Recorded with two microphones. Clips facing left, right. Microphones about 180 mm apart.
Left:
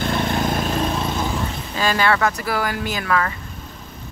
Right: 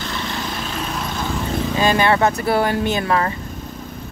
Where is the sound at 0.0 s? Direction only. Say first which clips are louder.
Left 6 dB; 50° left (ahead or behind).